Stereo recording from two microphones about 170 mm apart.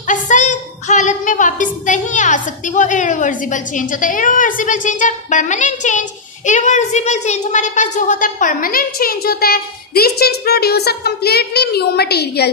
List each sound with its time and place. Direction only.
0.0 s a woman's voice: 45° left (ahead or behind); by 12.4 s 70° left (ahead or behind)